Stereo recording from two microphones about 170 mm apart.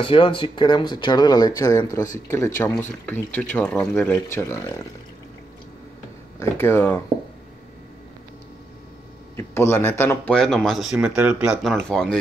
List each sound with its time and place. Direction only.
0.0 s speech: 30° left (ahead or behind)
6.4 s speech: 15° left (ahead or behind)
9.4 s speech: 15° left (ahead or behind)